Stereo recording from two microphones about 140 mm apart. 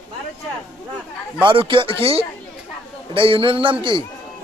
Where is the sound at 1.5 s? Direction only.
35° right (ahead or behind).